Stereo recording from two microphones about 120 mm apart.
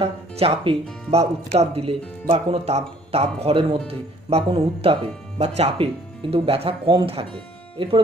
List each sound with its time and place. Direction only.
0.0 s speech: 55° right (ahead or behind)